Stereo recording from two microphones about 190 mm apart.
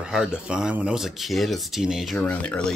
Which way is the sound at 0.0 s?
5° right (ahead or behind).